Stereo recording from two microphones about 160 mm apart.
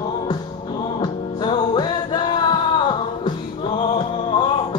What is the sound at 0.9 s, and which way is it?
Music, 30° left (ahead or behind).